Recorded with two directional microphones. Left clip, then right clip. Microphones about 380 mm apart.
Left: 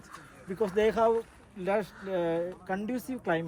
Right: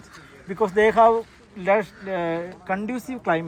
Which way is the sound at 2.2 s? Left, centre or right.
Centre.